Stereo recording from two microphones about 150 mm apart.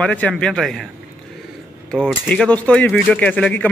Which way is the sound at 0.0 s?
10° left (ahead or behind).